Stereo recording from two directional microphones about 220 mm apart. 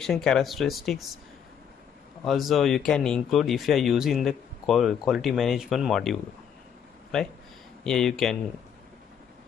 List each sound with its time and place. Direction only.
0.0 s speech: centre (ahead or behind)
2.2 s speech: centre (ahead or behind)
7.8 s speech: centre (ahead or behind)